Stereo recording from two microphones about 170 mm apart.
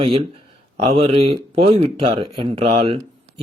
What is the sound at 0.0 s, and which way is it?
Speech, 35° right (ahead or behind).